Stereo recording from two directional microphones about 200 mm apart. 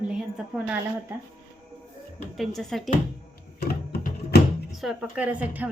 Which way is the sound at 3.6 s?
50° left (ahead or behind).